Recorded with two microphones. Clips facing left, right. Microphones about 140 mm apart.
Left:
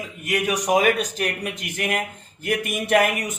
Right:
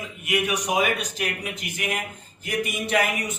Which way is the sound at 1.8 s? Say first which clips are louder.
Left 5 dB; 55° left (ahead or behind).